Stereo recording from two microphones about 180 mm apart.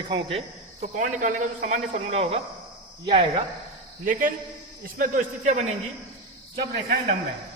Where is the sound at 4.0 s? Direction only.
50° right (ahead or behind).